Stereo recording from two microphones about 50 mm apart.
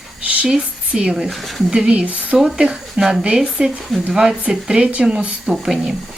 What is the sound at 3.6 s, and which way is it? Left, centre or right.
Speech, centre.